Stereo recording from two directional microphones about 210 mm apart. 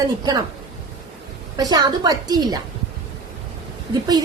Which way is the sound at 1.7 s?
20° right (ahead or behind).